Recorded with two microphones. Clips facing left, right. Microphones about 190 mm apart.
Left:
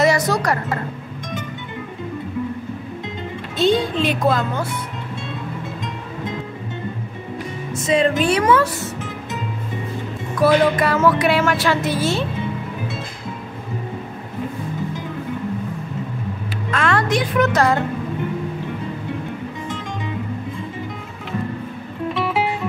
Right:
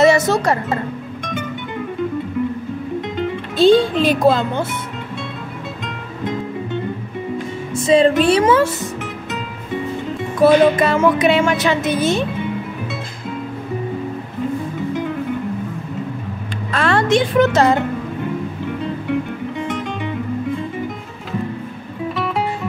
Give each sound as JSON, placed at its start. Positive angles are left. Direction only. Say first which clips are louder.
{"t": 0.0, "sound": "wind chime", "louder": "right 4 dB", "side_deg": -25}
{"t": 3.5, "sound": "speech", "louder": "right 6 dB", "side_deg": -30}
{"t": 7.7, "sound": "music", "louder": "right 5 dB", "side_deg": -30}
{"t": 8.2, "sound": "speech", "louder": "right 3 dB", "side_deg": -30}
{"t": 10.4, "sound": "speech", "louder": "right 4 dB", "side_deg": -25}
{"t": 16.7, "sound": "speech", "louder": "right 4 dB", "side_deg": -30}
{"t": 22.1, "sound": "music", "louder": "left 1 dB", "side_deg": 5}